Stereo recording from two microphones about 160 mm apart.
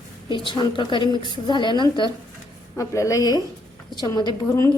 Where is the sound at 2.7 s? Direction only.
20° left (ahead or behind).